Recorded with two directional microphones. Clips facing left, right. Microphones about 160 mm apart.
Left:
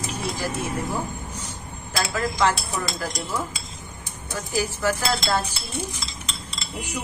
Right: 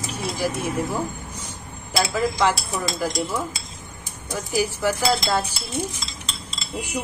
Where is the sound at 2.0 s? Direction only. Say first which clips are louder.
Right 2 dB; 15° right (ahead or behind).